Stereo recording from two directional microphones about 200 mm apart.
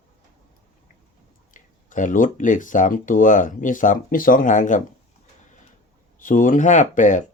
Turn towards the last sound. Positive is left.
turn(degrees=40)  # may be behind; listen again after turning